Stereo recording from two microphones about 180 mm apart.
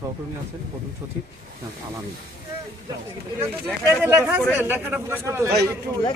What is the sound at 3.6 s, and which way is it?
Speech, 10° right (ahead or behind).